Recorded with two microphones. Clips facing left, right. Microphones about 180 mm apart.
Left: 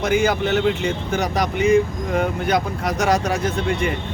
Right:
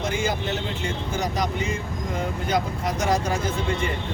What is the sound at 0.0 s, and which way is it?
Speech, 70° left (ahead or behind).